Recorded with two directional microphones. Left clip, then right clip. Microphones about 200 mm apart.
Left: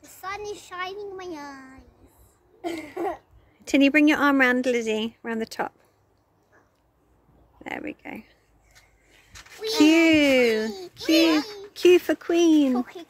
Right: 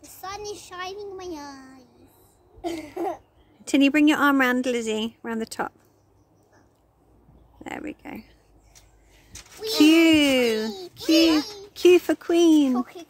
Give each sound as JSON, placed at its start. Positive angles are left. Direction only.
{"t": 0.1, "sound": "a child's voice", "side_deg": 10}
{"t": 7.5, "sound": "speech", "side_deg": 0}
{"t": 9.7, "sound": "a woman's voice", "side_deg": -5}
{"t": 12.7, "sound": "speech", "side_deg": -15}